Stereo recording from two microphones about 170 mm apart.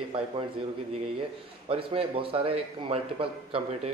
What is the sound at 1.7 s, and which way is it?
A man's voice, 30° right (ahead or behind).